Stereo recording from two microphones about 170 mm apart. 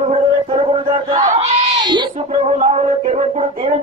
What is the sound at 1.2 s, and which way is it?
Speech, 45° right (ahead or behind).